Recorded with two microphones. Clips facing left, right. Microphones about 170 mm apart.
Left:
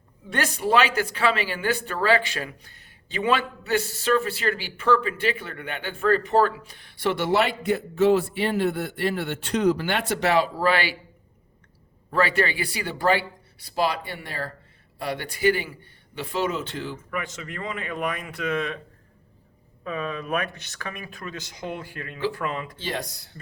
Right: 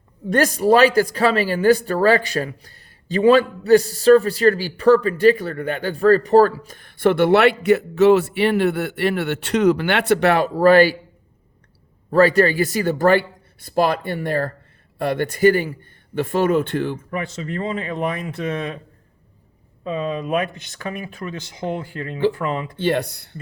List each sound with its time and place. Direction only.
0.3 s speech: 40° right (ahead or behind)
12.1 s speech: 40° right (ahead or behind); by 17.0 s 55° right (ahead or behind)
17.1 s speech: 30° right (ahead or behind)
19.8 s speech: 25° right (ahead or behind)
22.7 s speech: 60° right (ahead or behind)